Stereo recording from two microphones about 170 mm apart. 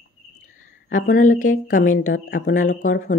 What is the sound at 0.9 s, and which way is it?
Speech, 50° left (ahead or behind).